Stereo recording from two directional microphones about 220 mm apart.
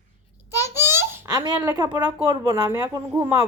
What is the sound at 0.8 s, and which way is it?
Speech, 10° right (ahead or behind).